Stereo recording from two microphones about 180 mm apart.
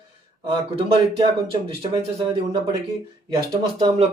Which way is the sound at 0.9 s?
25° right (ahead or behind).